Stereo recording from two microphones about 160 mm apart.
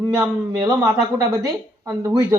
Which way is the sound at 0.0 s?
25° right (ahead or behind).